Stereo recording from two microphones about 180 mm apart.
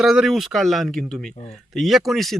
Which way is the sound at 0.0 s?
Centre (ahead or behind).